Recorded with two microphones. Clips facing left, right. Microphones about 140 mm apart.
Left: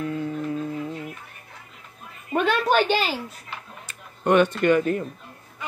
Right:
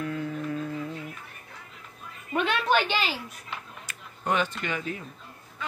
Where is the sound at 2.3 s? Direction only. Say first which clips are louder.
Left 4 dB; 40° left (ahead or behind).